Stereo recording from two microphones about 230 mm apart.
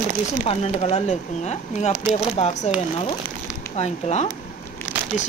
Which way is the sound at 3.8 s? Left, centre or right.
Left.